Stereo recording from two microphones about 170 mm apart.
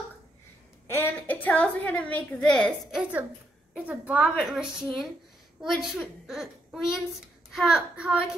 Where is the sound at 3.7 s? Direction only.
5° right (ahead or behind).